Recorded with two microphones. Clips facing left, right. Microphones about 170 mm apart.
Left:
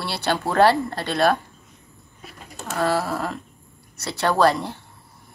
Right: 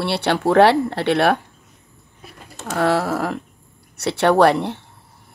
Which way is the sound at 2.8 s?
65° right (ahead or behind).